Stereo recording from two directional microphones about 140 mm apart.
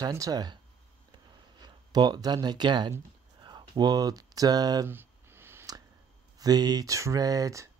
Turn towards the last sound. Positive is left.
turn(degrees=-25)  # may be behind; listen again after turning